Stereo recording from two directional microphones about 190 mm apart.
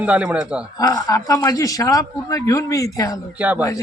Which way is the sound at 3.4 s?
10° right (ahead or behind).